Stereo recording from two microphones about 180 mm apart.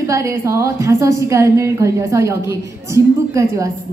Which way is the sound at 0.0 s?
15° right (ahead or behind).